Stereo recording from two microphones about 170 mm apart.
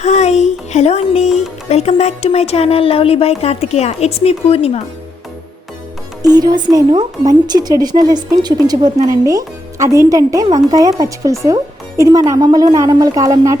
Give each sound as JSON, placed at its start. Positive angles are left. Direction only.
{"t": 0.0, "sound": "speech", "side_deg": 40}
{"t": 6.2, "sound": "speech", "side_deg": -25}